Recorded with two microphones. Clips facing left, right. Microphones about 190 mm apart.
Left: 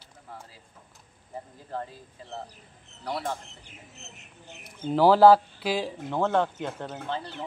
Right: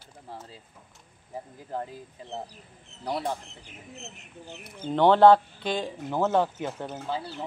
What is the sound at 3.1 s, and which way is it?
Speech, 20° right (ahead or behind).